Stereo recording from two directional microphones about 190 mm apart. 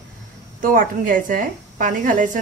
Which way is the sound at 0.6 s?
45° right (ahead or behind).